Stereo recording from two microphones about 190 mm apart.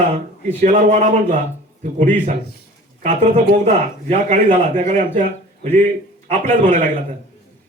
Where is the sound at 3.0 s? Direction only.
40° right (ahead or behind).